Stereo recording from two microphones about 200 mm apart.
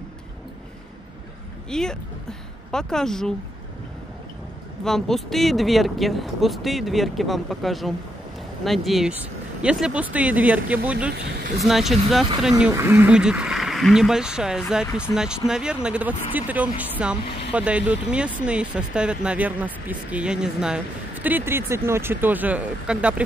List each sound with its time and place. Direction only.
1.7 s speech: 5° left (ahead or behind)
4.8 s speech: centre (ahead or behind)
11.1 s speech: 50° right (ahead or behind)
11.6 s speech: centre (ahead or behind)